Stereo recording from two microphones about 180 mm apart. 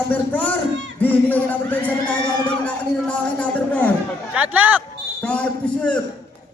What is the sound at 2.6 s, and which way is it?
A man's voice, 5° left (ahead or behind).